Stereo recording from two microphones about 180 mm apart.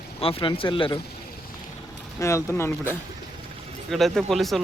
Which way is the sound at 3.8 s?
Centre (ahead or behind).